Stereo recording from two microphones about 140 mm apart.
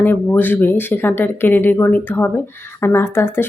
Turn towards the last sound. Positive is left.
turn(degrees=15)  # may be behind; listen again after turning